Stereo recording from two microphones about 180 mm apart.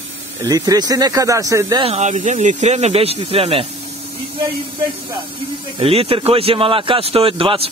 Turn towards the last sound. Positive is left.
turn(degrees=-30)  # may be behind; listen again after turning